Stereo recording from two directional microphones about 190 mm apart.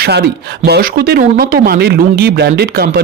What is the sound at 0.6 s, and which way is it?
Speech, 55° right (ahead or behind).